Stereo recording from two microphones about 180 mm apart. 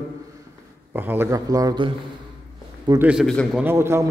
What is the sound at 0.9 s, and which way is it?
A man's voice, 10° right (ahead or behind).